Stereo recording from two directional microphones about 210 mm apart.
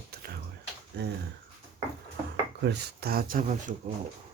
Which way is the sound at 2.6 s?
50° right (ahead or behind).